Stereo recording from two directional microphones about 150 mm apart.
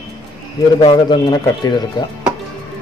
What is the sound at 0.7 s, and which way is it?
Speech, 30° left (ahead or behind).